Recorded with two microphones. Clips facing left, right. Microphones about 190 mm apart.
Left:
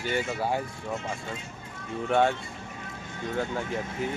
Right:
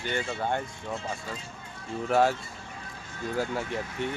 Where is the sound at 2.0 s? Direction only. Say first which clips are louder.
Even; centre (ahead or behind).